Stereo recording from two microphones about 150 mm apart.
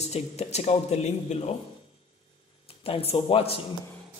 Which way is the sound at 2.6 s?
40° left (ahead or behind).